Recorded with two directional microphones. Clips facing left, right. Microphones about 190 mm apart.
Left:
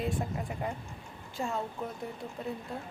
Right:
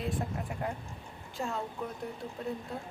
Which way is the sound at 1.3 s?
Centre (ahead or behind).